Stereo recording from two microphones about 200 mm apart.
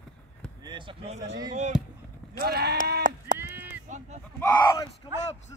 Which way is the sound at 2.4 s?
55° right (ahead or behind).